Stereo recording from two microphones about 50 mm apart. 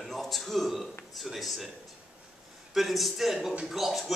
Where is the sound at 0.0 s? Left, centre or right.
Centre.